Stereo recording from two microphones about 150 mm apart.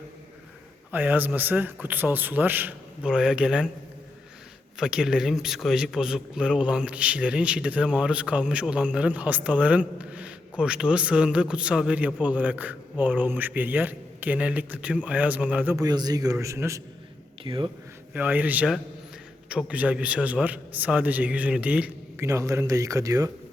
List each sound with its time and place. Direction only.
0.9 s speech: 10° right (ahead or behind)
4.8 s speech: 5° right (ahead or behind)
15.7 s a man's voice: 25° right (ahead or behind)
17.4 s speech: 35° right (ahead or behind)
18.1 s speech: 10° right (ahead or behind)
22.3 s a man's voice: 20° right (ahead or behind)